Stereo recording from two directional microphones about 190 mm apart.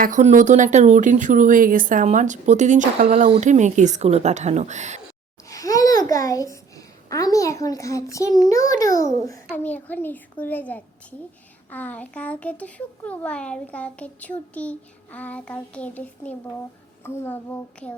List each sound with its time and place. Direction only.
0.0 s speech: 40° right (ahead or behind)
5.5 s babbling: 20° left (ahead or behind)
8.4 s a child's voice: 20° left (ahead or behind)